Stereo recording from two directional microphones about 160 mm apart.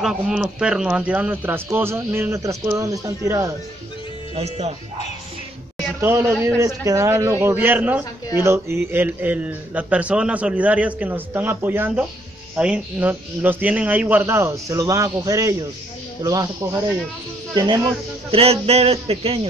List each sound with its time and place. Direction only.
0.0 s a man's voice: 5° right (ahead or behind); by 3.5 s 20° right (ahead or behind)
4.4 s speech: 45° right (ahead or behind)
5.9 s a man's voice: 15° right (ahead or behind)
18.3 s speech: 40° right (ahead or behind)